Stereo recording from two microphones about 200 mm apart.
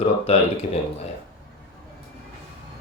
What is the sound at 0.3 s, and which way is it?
Speech, 30° left (ahead or behind).